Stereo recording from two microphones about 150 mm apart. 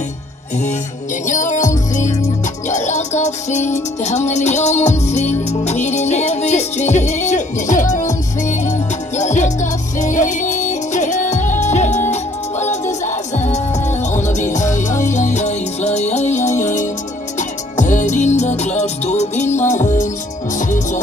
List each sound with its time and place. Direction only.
1.2 s music: 55° left (ahead or behind)